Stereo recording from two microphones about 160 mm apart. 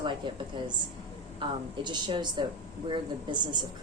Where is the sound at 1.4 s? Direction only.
30° right (ahead or behind).